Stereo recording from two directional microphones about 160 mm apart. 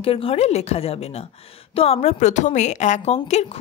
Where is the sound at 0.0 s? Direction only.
35° left (ahead or behind).